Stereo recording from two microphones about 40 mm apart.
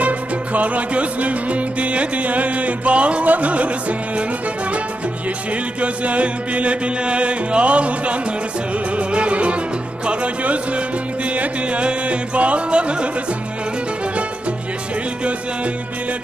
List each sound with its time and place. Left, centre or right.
0.0 s music: right
5.8 s music: right